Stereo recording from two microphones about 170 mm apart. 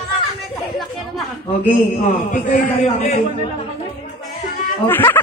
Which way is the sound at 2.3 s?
50° left (ahead or behind).